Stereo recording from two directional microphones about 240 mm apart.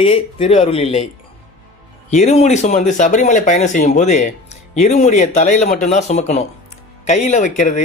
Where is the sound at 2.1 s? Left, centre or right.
Left.